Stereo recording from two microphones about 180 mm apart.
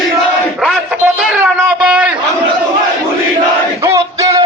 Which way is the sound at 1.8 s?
5° right (ahead or behind).